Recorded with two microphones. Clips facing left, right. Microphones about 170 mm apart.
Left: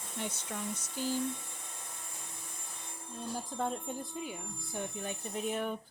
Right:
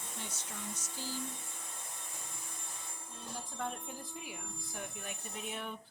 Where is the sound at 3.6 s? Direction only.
30° left (ahead or behind).